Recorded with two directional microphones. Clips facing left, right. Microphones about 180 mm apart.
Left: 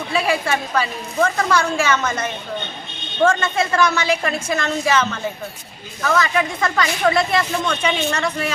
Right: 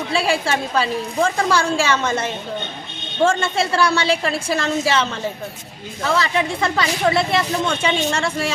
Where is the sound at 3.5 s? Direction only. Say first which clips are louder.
Even; 30° right (ahead or behind).